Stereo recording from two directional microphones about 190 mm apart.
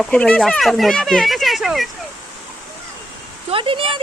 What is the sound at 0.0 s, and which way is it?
Speech, 5° left (ahead or behind).